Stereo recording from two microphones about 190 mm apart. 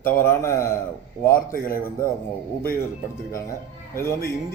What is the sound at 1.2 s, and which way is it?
Speech, 50° left (ahead or behind).